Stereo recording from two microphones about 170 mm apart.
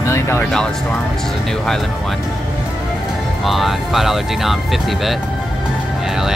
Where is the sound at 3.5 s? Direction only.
Centre (ahead or behind).